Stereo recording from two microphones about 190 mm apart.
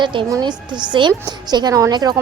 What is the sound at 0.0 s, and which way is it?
A woman's voice, 25° right (ahead or behind).